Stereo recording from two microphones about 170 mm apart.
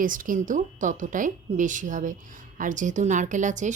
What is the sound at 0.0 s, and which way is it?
A woman's voice, 50° right (ahead or behind).